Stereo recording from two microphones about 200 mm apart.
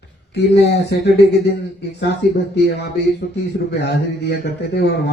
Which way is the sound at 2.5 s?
55° left (ahead or behind).